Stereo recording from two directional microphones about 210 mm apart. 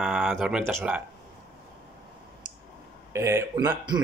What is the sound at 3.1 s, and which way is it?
Speech, 10° right (ahead or behind).